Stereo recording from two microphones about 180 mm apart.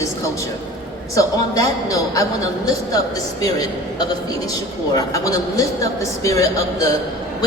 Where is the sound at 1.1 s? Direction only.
20° left (ahead or behind).